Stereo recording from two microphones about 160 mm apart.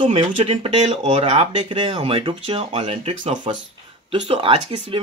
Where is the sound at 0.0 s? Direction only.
40° right (ahead or behind).